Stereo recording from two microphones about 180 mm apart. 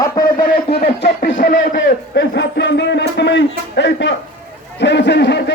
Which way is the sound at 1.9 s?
70° left (ahead or behind).